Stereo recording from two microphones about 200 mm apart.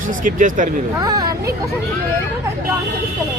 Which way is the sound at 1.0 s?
20° right (ahead or behind).